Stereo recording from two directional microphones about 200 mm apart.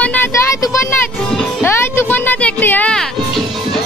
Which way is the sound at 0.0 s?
10° left (ahead or behind).